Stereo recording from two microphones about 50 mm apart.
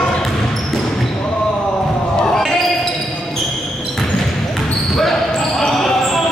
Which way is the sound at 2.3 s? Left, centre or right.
Centre.